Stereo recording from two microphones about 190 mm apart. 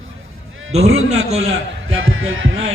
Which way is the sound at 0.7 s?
35° right (ahead or behind).